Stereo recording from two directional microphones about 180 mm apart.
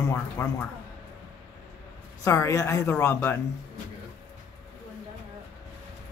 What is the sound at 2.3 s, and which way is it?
Speech, 15° left (ahead or behind).